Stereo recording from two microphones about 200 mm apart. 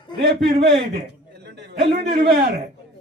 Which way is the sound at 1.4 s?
60° right (ahead or behind).